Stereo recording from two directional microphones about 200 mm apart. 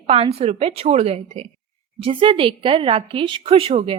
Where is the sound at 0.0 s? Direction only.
30° right (ahead or behind).